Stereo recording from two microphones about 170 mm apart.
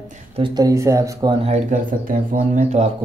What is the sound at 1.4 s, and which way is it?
Speech, 40° right (ahead or behind).